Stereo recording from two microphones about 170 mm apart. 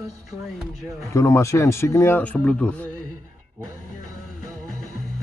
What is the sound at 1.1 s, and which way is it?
Speech, 15° left (ahead or behind).